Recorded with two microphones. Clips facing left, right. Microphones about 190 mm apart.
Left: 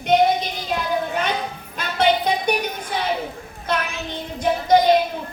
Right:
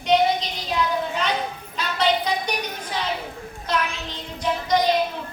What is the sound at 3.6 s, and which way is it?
Child singing, 55° left (ahead or behind).